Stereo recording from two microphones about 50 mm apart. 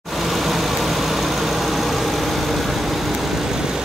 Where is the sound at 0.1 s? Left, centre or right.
Centre.